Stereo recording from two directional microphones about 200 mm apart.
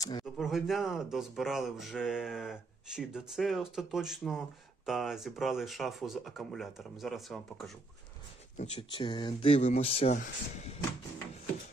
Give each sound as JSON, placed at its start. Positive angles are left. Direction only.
{"t": 0.0, "sound": "speech", "side_deg": 20}
{"t": 0.3, "sound": "speech", "side_deg": 0}
{"t": 8.5, "sound": "speech", "side_deg": 30}